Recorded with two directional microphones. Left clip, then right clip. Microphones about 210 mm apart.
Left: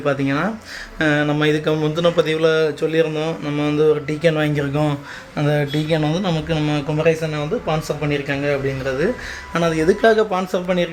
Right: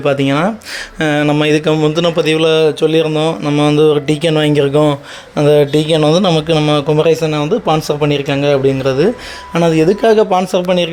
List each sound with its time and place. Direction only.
0.0 s speech: 35° right (ahead or behind)
8.0 s speech: 45° right (ahead or behind)
9.6 s speech: 30° right (ahead or behind)